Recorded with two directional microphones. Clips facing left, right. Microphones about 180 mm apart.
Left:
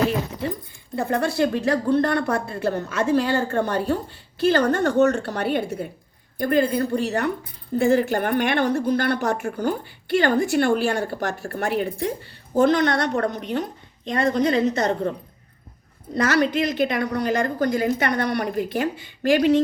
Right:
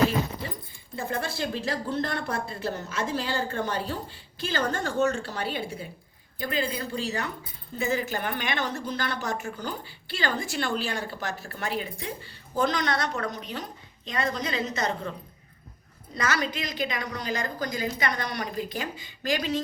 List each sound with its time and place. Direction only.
0.9 s a woman's voice: 65° left (ahead or behind)
16.1 s a woman's voice: 55° left (ahead or behind)